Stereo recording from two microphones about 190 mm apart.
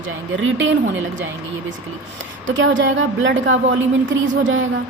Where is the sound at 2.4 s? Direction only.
75° right (ahead or behind).